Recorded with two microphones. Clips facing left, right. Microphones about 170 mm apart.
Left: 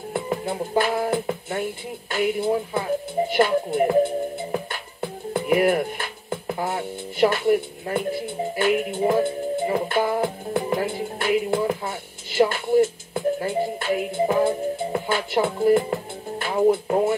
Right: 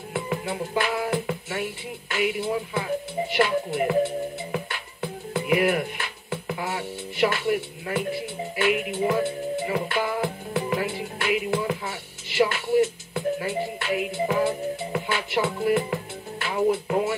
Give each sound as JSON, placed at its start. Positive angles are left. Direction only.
{"t": 0.1, "sound": "music", "side_deg": 40}
{"t": 1.2, "sound": "speech", "side_deg": 35}
{"t": 5.5, "sound": "speech", "side_deg": 40}
{"t": 10.5, "sound": "music", "side_deg": 40}
{"t": 11.6, "sound": "speech", "side_deg": 45}